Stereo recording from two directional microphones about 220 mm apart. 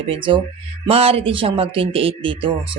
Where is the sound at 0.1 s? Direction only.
25° right (ahead or behind).